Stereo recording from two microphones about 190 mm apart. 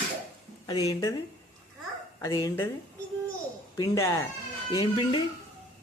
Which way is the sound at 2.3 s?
20° left (ahead or behind).